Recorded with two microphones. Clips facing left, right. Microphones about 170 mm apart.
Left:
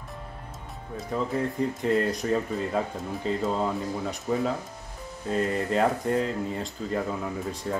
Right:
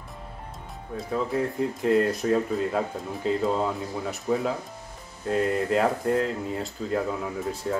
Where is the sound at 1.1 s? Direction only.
Centre (ahead or behind).